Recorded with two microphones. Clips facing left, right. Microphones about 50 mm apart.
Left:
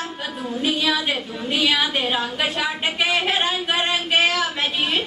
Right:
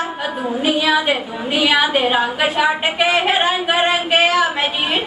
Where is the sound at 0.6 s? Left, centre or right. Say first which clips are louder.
Right 5 dB; centre.